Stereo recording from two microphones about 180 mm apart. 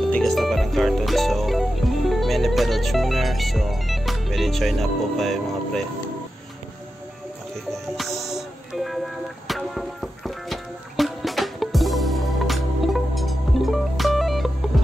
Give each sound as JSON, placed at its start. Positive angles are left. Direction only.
{"t": 0.1, "sound": "speech", "side_deg": 0}
{"t": 8.2, "sound": "music", "side_deg": 0}